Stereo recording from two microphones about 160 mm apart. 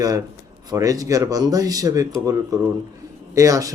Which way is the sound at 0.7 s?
20° right (ahead or behind).